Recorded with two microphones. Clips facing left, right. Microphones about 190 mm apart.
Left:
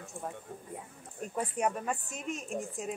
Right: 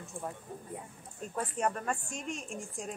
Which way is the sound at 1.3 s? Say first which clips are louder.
Left 1 dB; 10° left (ahead or behind).